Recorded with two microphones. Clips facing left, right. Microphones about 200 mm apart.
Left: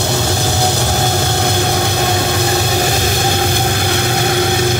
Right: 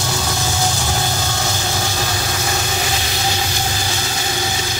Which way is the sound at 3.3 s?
55° left (ahead or behind).